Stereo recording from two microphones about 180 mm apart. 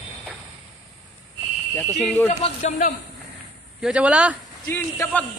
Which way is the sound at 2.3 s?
40° left (ahead or behind).